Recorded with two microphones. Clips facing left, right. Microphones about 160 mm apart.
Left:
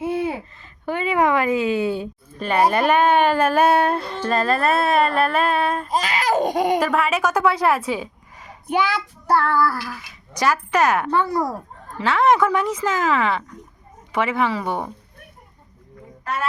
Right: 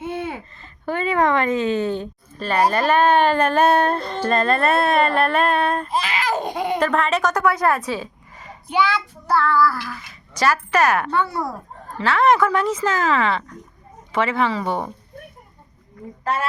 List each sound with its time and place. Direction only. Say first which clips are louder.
0.0 s a sound: left 4 dB; 30° left (ahead or behind)
0.5 s a woman's voice: right 1 dB; 10° left (ahead or behind)
5.9 s baby laughter: left 2 dB; 40° left (ahead or behind)
6.7 s a woman's voice: even; 10° left (ahead or behind)
9.9 s speech: even; 15° left (ahead or behind)
11.1 s a child's voice: left 2 dB; 35° left (ahead or behind)
11.9 s speech: even; 20° left (ahead or behind)
16.2 s a woman's voice: right 2 dB; 30° right (ahead or behind)